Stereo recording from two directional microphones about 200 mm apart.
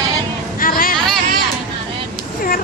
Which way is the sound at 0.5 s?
45° left (ahead or behind).